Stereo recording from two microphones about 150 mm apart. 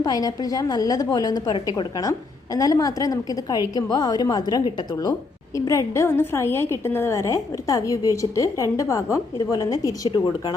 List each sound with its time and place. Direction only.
0.0 s a woman's voice: 25° left (ahead or behind)